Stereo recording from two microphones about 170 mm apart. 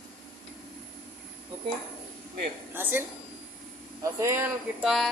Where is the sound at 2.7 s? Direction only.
10° right (ahead or behind).